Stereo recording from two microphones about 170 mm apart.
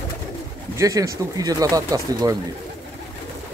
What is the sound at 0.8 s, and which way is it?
Speech, 20° right (ahead or behind).